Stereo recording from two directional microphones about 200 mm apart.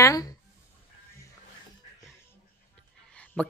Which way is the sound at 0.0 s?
20° left (ahead or behind).